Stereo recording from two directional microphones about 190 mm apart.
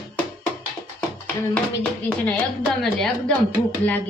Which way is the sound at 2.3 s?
5° left (ahead or behind).